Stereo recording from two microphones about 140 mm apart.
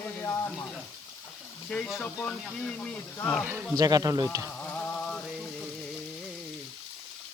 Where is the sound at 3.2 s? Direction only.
5° left (ahead or behind).